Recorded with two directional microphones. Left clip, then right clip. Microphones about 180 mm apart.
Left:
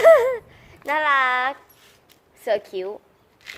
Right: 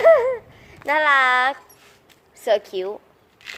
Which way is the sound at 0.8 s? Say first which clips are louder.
Right 3 dB; 5° right (ahead or behind).